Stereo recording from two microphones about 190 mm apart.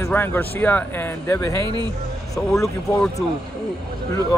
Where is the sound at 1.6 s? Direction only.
25° right (ahead or behind).